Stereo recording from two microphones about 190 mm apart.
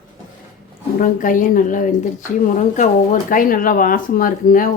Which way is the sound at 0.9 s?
45° left (ahead or behind).